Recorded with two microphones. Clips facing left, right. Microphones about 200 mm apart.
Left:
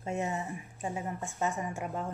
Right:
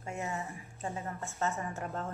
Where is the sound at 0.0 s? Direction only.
20° left (ahead or behind).